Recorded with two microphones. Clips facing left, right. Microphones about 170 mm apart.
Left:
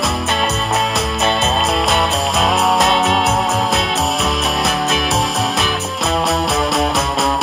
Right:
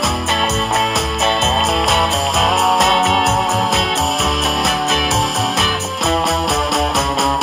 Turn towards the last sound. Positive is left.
turn(degrees=0)  # may be behind; listen again after turning